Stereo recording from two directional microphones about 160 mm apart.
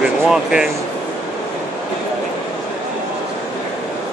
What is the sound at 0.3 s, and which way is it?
Speech, 5° right (ahead or behind).